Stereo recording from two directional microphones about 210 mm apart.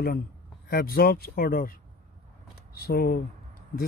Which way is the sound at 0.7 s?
45° left (ahead or behind).